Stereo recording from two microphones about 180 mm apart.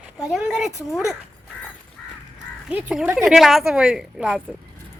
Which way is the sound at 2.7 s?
5° right (ahead or behind).